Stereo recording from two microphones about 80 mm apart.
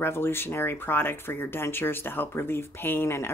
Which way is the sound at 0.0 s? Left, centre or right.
Left.